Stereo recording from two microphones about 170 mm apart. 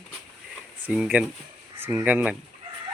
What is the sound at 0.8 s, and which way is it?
Speech, 5° right (ahead or behind).